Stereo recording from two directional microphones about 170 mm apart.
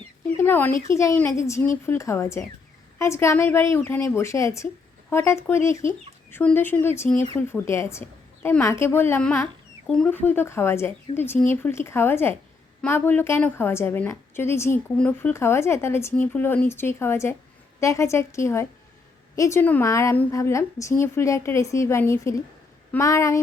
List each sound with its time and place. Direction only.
0.3 s a woman's voice: 10° left (ahead or behind)
9.8 s a woman's voice: 5° left (ahead or behind)